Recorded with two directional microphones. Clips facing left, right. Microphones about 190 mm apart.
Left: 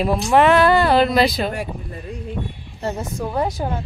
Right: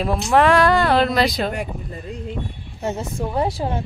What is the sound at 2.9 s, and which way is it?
Speech, 30° right (ahead or behind).